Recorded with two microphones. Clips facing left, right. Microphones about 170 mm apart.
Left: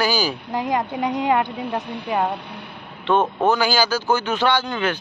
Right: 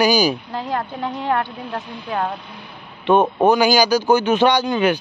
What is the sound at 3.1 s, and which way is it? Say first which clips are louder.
Speech: right 4 dB; 15° right (ahead or behind).